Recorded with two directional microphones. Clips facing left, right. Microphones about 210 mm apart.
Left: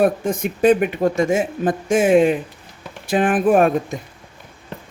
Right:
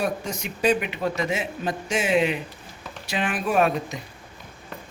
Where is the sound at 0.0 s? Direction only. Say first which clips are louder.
Left 10 dB; 55° left (ahead or behind).